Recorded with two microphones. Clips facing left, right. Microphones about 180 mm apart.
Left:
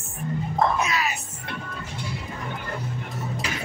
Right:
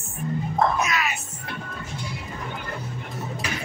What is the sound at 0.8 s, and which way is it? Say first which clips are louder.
Speech: even; 30° left (ahead or behind).